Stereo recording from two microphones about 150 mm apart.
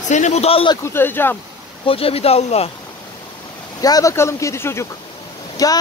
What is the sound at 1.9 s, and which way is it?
Speech, 40° left (ahead or behind).